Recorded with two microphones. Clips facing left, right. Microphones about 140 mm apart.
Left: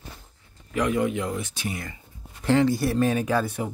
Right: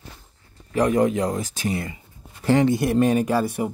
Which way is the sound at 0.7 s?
40° right (ahead or behind).